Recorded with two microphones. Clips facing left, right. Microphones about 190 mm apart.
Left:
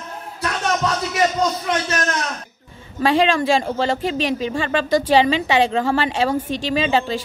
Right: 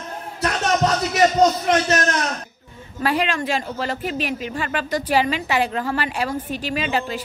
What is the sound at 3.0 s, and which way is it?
Speech, 30° left (ahead or behind).